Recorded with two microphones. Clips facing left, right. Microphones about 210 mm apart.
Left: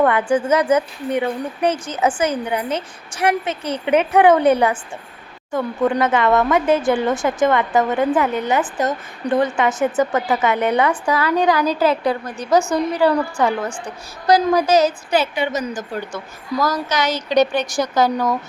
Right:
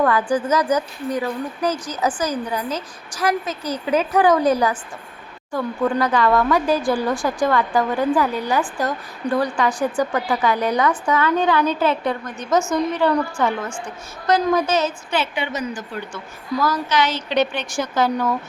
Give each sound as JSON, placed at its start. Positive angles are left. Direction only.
{"t": 0.0, "sound": "a woman's voice", "side_deg": 25}
{"t": 14.3, "sound": "a woman's voice", "side_deg": 35}